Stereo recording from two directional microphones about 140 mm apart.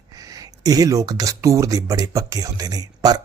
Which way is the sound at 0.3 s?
25° right (ahead or behind).